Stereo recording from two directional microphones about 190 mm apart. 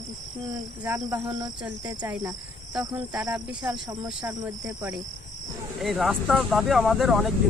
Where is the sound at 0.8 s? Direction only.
15° right (ahead or behind).